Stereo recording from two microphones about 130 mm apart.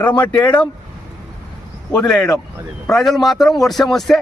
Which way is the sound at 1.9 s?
5° left (ahead or behind).